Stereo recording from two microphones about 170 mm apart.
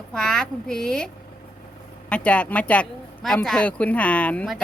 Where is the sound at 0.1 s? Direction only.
5° left (ahead or behind).